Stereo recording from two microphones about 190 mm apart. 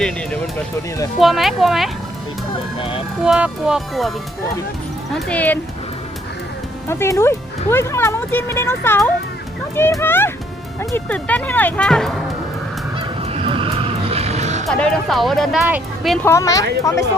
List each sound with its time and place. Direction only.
1.2 s speech: centre (ahead or behind)
3.2 s speech: 5° right (ahead or behind)
5.1 s speech: 5° left (ahead or behind)
6.8 s speech: 15° left (ahead or behind)
13.0 s fowl: 30° right (ahead or behind)
14.7 s speech: 5° left (ahead or behind)
16.1 s speech: 15° left (ahead or behind)